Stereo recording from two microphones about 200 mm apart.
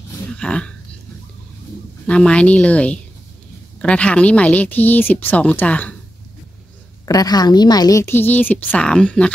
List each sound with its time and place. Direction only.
0.3 s a woman's voice: 5° left (ahead or behind)
2.0 s a woman's voice: 5° left (ahead or behind)
7.1 s a woman's voice: 20° left (ahead or behind)